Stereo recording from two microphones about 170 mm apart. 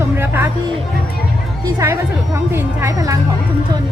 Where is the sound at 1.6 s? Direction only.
20° right (ahead or behind).